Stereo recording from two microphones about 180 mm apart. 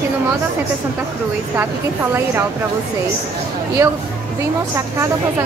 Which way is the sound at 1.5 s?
10° right (ahead or behind).